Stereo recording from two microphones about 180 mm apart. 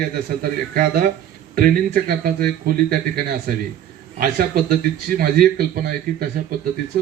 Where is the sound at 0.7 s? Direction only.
55° right (ahead or behind).